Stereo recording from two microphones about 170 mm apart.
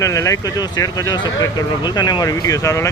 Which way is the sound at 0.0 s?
20° left (ahead or behind).